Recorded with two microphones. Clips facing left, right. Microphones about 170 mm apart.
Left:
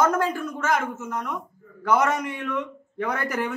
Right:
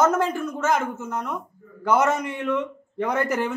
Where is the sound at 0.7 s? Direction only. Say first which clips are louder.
Right 1 dB; centre (ahead or behind).